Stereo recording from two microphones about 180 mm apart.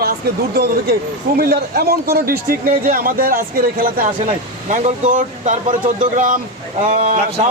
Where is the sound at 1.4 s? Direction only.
60° right (ahead or behind).